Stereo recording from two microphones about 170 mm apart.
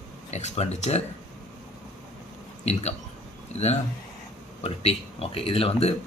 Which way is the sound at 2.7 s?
40° left (ahead or behind).